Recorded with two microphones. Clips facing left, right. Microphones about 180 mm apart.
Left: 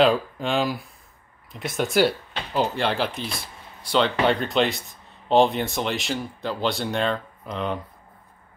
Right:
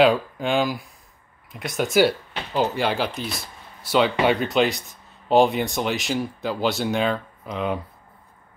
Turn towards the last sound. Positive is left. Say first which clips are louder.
# right 2 dB
turn(degrees=-5)  # may be behind; listen again after turning